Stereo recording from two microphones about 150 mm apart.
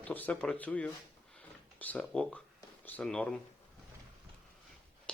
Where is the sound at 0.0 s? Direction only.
10° left (ahead or behind).